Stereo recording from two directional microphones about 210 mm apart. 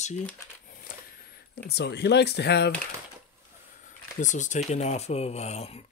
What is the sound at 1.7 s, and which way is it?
Speech, 55° left (ahead or behind).